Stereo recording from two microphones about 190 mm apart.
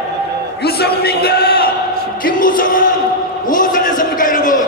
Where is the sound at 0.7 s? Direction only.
55° left (ahead or behind).